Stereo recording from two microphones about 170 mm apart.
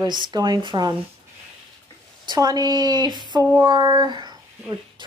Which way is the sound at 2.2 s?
25° right (ahead or behind).